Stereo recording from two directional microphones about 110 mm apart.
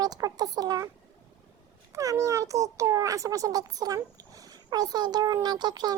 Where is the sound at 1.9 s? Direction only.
30° right (ahead or behind).